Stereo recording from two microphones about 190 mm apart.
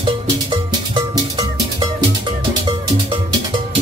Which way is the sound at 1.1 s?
20° right (ahead or behind).